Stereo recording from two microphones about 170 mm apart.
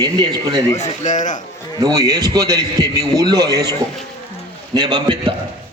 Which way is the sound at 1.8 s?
20° right (ahead or behind).